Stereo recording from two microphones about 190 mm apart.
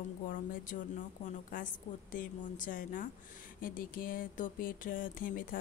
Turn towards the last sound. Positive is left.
turn(degrees=45)  # may be behind; listen again after turning